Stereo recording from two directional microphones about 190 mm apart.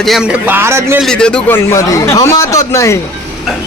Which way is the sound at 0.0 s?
Centre (ahead or behind).